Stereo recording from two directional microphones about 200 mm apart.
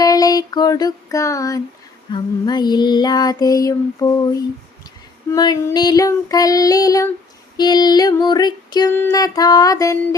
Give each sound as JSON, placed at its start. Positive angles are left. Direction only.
{"t": 0.0, "sound": "a sound", "side_deg": 20}
{"t": 2.1, "sound": "female singing", "side_deg": 20}
{"t": 5.3, "sound": "child singing", "side_deg": 20}
{"t": 7.5, "sound": "female singing", "side_deg": 20}